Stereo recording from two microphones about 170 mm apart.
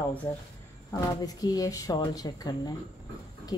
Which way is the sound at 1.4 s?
20° left (ahead or behind).